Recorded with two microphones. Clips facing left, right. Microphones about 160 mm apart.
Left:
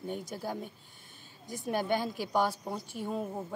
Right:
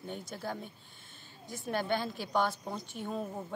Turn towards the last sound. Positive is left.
turn(degrees=10)  # may be behind; listen again after turning